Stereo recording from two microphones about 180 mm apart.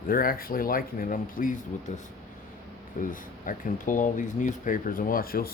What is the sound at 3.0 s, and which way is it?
Speech, 35° left (ahead or behind).